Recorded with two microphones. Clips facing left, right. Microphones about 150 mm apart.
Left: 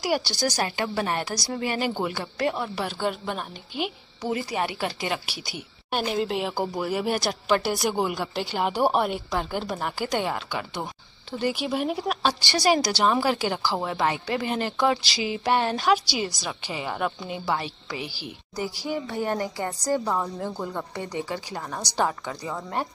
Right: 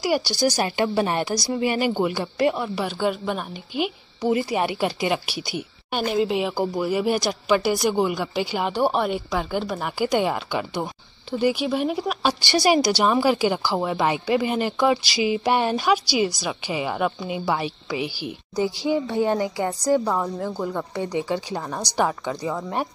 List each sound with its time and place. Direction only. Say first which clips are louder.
0.0 s a woman's voice: right 3 dB; centre (ahead or behind)
0.6 s a woman's voice: right 5 dB; 20° right (ahead or behind)
2.5 s a woman's voice: right 3 dB; centre (ahead or behind)
4.3 s speech: right 5 dB; 20° right (ahead or behind)
6.1 s a woman's voice: right 7 dB; centre (ahead or behind)
11.4 s a woman's voice: right 4 dB; centre (ahead or behind)
12.4 s speech: right 4 dB; 15° right (ahead or behind)
20.1 s a woman's voice: right 3 dB; centre (ahead or behind)
21.0 s a woman's voice: right 8 dB; 20° right (ahead or behind)